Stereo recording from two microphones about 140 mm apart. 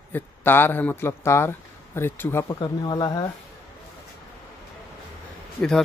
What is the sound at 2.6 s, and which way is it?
Speech, 30° left (ahead or behind).